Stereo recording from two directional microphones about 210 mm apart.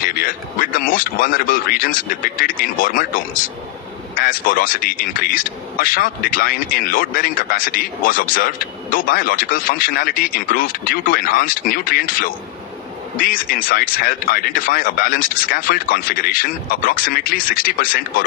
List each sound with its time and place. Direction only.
0.0 s speech: 45° left (ahead or behind)